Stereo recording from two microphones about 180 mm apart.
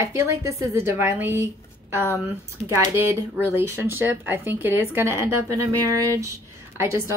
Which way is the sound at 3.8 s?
10° right (ahead or behind).